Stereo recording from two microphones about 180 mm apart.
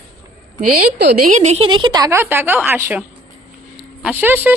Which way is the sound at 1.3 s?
40° right (ahead or behind).